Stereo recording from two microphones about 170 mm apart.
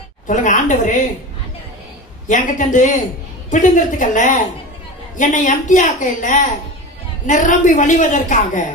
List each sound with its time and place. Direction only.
0.3 s a woman's voice: 45° left (ahead or behind)
2.2 s a woman's voice: 50° left (ahead or behind)